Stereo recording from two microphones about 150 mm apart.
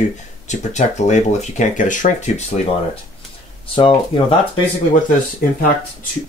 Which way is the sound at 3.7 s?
35° left (ahead or behind).